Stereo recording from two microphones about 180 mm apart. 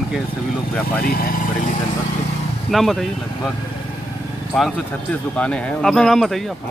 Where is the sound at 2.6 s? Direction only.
Centre (ahead or behind).